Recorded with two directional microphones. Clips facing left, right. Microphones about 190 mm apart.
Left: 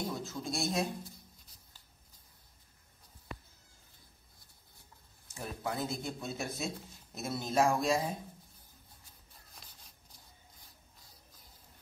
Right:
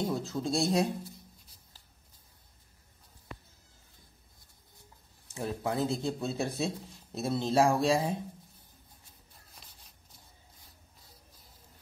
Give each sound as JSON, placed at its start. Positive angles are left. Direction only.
{"t": 0.1, "sound": "speech", "side_deg": -30}
{"t": 5.3, "sound": "speech", "side_deg": -30}
{"t": 9.5, "sound": "writing", "side_deg": 0}